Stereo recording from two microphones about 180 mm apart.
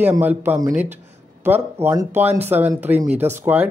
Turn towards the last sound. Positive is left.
turn(degrees=-10)  # may be behind; listen again after turning